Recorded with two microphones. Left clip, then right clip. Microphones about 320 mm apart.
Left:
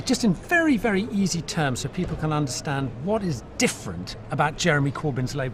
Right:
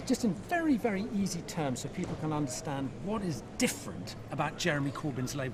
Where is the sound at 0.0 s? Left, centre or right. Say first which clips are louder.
Left 8 dB; left.